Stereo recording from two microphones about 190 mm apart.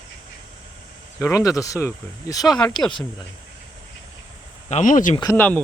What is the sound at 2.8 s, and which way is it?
Speech, 25° left (ahead or behind).